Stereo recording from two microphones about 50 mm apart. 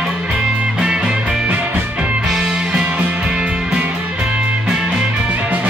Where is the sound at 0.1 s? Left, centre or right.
Right.